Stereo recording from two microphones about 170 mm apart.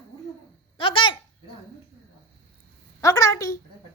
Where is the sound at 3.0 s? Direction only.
20° left (ahead or behind).